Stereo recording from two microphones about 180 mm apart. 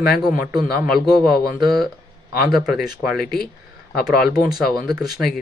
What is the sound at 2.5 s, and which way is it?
Speech, 5° right (ahead or behind).